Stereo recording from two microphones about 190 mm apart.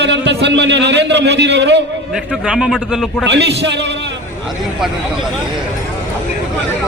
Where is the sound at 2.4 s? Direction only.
5° right (ahead or behind).